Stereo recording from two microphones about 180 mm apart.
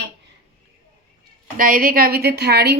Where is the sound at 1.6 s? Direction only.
50° right (ahead or behind).